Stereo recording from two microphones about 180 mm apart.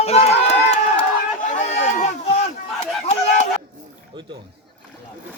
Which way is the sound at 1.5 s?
40° left (ahead or behind).